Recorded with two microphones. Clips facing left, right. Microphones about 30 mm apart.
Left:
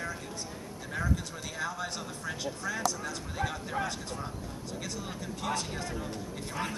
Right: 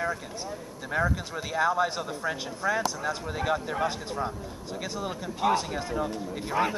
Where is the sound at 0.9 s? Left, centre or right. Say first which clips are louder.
Right 6 dB; right.